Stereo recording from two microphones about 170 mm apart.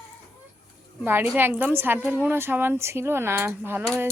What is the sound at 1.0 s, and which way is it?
A woman's voice, 10° right (ahead or behind).